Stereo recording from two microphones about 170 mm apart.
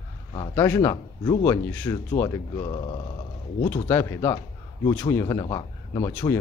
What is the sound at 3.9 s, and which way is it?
Speech, 15° left (ahead or behind).